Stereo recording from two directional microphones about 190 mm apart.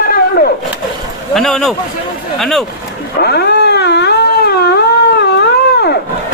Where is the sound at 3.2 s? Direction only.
60° left (ahead or behind).